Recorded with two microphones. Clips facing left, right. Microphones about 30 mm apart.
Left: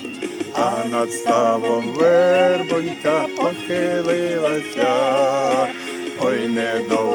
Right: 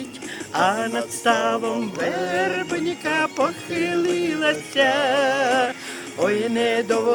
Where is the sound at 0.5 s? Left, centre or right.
Right.